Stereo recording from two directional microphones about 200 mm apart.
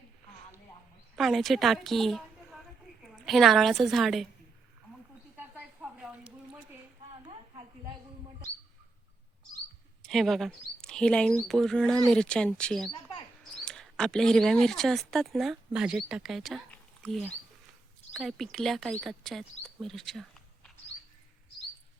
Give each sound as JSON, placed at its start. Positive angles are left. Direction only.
{"t": 1.1, "sound": "speech", "side_deg": 0}
{"t": 3.2, "sound": "speech", "side_deg": 0}
{"t": 5.5, "sound": "a sound", "side_deg": -5}
{"t": 10.0, "sound": "speech", "side_deg": 0}